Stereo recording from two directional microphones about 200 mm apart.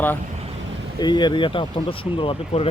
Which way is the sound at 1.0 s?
20° left (ahead or behind).